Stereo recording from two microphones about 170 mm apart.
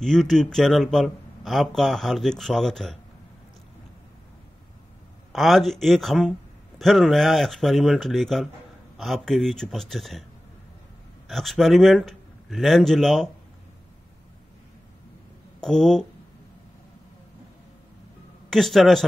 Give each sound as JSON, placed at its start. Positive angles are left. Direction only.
{"t": 0.0, "sound": "speech", "side_deg": 0}
{"t": 5.3, "sound": "speech", "side_deg": 0}
{"t": 11.2, "sound": "a man's voice", "side_deg": 0}
{"t": 15.6, "sound": "speech", "side_deg": 5}
{"t": 18.5, "sound": "speech", "side_deg": 0}